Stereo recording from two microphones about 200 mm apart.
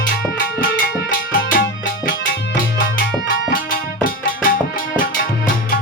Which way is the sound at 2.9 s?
45° left (ahead or behind).